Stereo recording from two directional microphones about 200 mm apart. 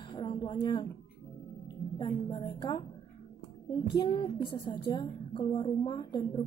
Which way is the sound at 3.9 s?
25° left (ahead or behind).